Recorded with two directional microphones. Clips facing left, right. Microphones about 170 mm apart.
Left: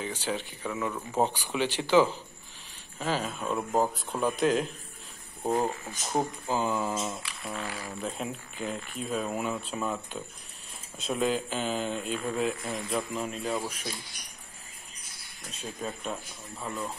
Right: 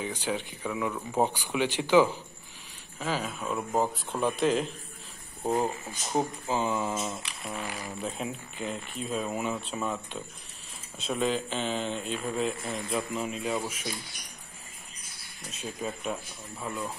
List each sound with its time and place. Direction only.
0.2 s speech: 10° right (ahead or behind)
7.2 s speech: 15° right (ahead or behind)
8.0 s speech: centre (ahead or behind)
15.8 s speech: 5° right (ahead or behind)